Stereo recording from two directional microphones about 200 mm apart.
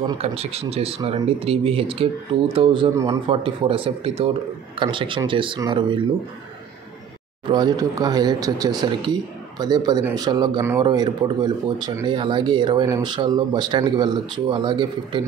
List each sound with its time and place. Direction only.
0.2 s speech: 30° right (ahead or behind)
3.3 s speech: 25° right (ahead or behind)
7.4 s speech: 20° right (ahead or behind)